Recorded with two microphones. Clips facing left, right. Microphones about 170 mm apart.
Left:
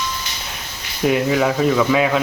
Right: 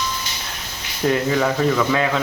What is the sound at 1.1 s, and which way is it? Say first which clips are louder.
Speech: left 2 dB; 10° left (ahead or behind).